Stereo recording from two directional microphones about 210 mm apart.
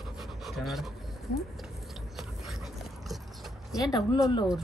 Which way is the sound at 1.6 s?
Centre (ahead or behind).